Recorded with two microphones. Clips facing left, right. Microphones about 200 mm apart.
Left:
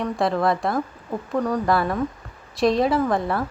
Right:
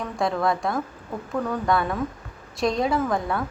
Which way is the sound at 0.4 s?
Centre (ahead or behind).